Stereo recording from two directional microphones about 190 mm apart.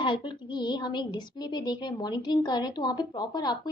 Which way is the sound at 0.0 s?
25° left (ahead or behind).